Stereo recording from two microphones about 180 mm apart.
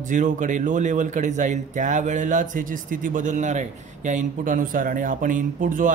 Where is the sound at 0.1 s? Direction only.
45° right (ahead or behind).